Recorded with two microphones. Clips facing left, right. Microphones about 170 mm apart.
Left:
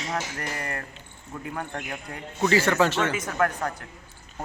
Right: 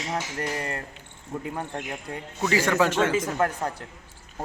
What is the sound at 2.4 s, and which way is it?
Speech, 10° right (ahead or behind).